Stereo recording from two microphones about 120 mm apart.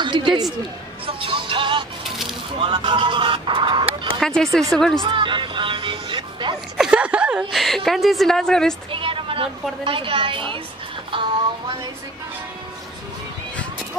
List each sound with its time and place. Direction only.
0.0 s a sound: 40° right (ahead or behind)
1.0 s music: 45° right (ahead or behind)
2.6 s speech: 40° right (ahead or behind)
4.2 s a woman's voice: 5° left (ahead or behind)
5.0 s speech: 45° right (ahead or behind)
6.8 s a woman's voice: 10° right (ahead or behind)
8.9 s a woman's voice: 45° right (ahead or behind)